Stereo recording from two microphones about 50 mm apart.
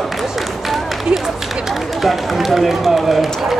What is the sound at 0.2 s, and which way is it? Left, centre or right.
Speech, centre.